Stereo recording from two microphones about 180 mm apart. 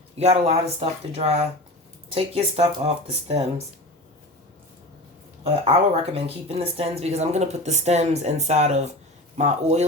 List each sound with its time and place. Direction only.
0.2 s a woman's voice: 35° right (ahead or behind)
5.4 s a woman's voice: 35° right (ahead or behind)